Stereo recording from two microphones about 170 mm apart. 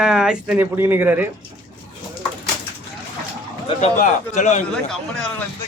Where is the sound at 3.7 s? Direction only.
40° left (ahead or behind).